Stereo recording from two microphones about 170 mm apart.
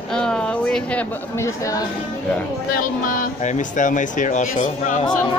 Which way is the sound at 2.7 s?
50° left (ahead or behind).